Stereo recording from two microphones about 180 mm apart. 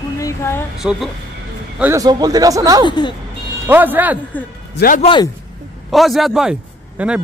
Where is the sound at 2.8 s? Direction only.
25° left (ahead or behind).